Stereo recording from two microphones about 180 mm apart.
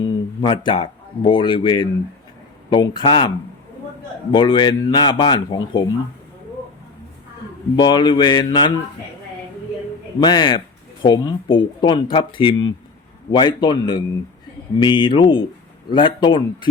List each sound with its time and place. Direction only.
0.0 s speech: 25° left (ahead or behind)
7.8 s speech: 25° left (ahead or behind)
10.2 s speech: 25° left (ahead or behind)